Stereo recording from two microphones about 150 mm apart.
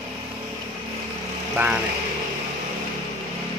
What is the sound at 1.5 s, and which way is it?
Speech, 10° right (ahead or behind).